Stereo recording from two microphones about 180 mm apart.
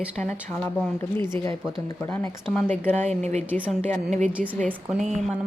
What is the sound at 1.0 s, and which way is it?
Speech, 15° left (ahead or behind).